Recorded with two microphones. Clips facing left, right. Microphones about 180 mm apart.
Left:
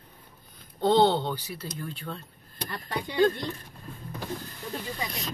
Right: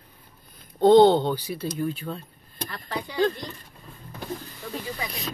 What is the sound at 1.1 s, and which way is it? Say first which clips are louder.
Speech: right 6 dB; 45° right (ahead or behind).